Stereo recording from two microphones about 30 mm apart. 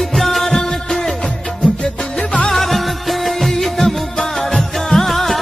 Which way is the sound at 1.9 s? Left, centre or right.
Left.